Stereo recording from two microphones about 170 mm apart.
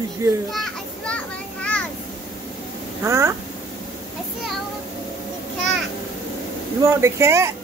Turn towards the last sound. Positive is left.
turn(degrees=-15)  # may be behind; listen again after turning